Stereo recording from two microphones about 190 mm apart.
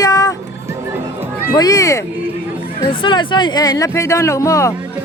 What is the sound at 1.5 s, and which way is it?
Speech, 20° left (ahead or behind).